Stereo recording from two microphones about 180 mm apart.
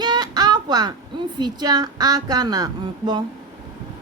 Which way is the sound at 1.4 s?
25° right (ahead or behind).